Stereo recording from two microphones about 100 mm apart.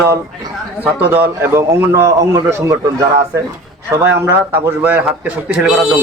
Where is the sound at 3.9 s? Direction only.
20° right (ahead or behind).